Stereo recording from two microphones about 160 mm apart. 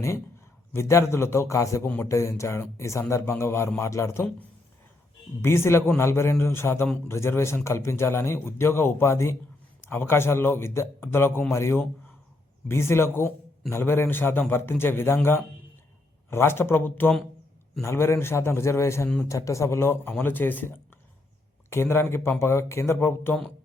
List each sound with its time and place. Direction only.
0.7 s a man's voice: 15° left (ahead or behind)